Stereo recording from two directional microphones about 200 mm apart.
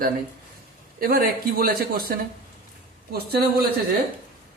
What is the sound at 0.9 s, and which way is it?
Speech, 45° right (ahead or behind).